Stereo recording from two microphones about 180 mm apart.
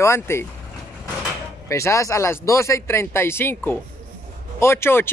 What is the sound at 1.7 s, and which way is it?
Speech, 15° left (ahead or behind).